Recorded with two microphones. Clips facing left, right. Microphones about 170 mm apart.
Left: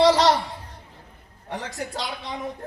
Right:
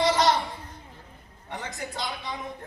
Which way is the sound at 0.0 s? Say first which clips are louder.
Left 5 dB; 80° left.